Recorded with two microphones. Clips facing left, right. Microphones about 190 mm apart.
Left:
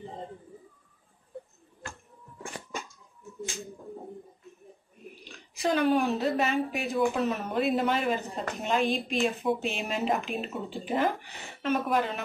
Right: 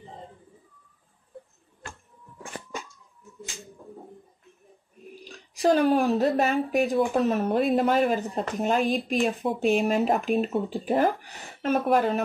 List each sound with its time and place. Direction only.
5.2 s speech: 40° right (ahead or behind)